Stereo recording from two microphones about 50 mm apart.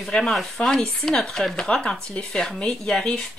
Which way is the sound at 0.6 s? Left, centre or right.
Left.